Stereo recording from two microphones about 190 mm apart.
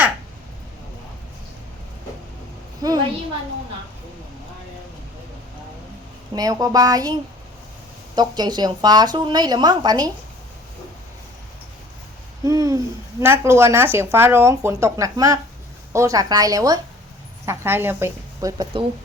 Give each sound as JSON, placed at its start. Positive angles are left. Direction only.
{"t": 2.8, "sound": "a sound", "side_deg": -20}
{"t": 6.3, "sound": "a woman's voice", "side_deg": -20}
{"t": 12.5, "sound": "speech", "side_deg": -15}